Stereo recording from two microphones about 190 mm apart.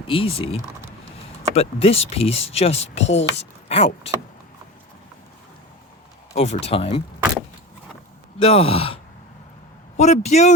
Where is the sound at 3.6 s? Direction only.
35° left (ahead or behind).